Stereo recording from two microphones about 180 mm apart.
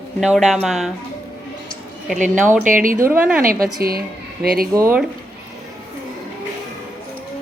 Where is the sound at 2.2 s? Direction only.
45° right (ahead or behind).